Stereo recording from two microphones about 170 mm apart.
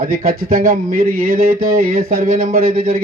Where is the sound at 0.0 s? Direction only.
55° right (ahead or behind).